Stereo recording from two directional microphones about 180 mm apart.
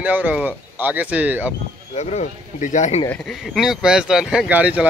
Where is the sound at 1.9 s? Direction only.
40° left (ahead or behind).